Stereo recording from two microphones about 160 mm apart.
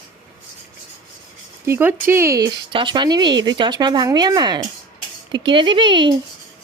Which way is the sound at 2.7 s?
30° right (ahead or behind).